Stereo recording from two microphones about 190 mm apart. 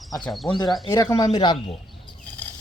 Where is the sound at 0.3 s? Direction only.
Centre (ahead or behind).